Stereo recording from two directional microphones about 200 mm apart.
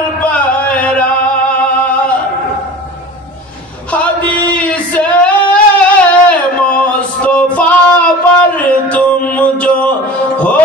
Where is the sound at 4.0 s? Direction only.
5° left (ahead or behind).